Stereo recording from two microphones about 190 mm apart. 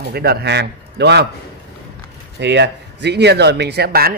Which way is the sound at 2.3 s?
65° right (ahead or behind).